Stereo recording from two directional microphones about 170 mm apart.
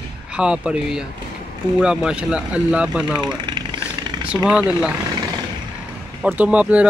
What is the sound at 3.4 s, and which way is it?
Vehicle, 25° right (ahead or behind).